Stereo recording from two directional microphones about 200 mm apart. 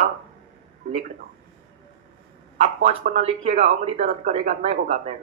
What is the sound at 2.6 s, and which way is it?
Speech, 35° right (ahead or behind).